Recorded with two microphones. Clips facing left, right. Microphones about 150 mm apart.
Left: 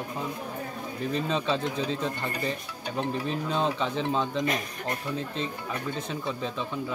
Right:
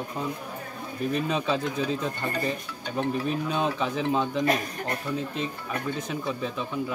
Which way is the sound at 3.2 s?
10° right (ahead or behind).